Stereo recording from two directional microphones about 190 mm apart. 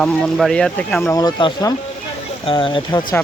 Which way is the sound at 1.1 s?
20° left (ahead or behind).